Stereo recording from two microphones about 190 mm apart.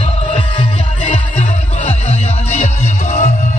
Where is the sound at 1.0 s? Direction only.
35° left (ahead or behind).